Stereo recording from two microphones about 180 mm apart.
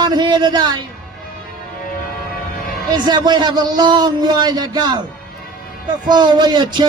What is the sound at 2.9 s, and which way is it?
A man's voice, 25° right (ahead or behind).